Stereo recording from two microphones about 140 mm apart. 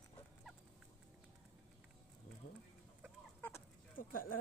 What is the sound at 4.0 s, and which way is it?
Speech, 85° left.